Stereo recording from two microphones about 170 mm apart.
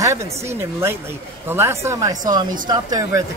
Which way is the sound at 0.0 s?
15° right (ahead or behind).